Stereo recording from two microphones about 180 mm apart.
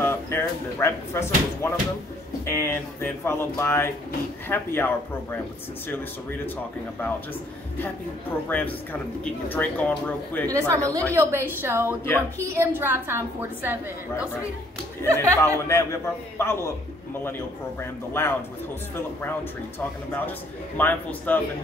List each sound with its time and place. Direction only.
0.0 s speech: 15° left (ahead or behind)
8.5 s speech: 10° left (ahead or behind)
10.5 s a woman's voice: 15° right (ahead or behind)
15.1 s speech: 15° left (ahead or behind)
18.2 s speech: 15° left (ahead or behind)
20.7 s speech: 10° left (ahead or behind)